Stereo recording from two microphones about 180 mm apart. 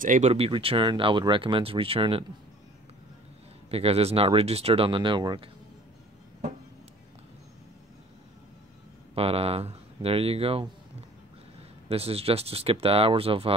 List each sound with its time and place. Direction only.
0.0 s speech: 40° right (ahead or behind)
3.7 s speech: 35° right (ahead or behind)
9.1 s speech: 35° right (ahead or behind)
11.9 s speech: 35° right (ahead or behind)